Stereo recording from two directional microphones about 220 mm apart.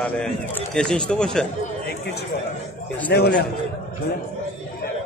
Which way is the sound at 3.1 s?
45° left (ahead or behind).